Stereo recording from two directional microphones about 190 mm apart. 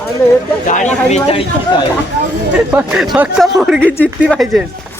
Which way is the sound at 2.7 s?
5° right (ahead or behind).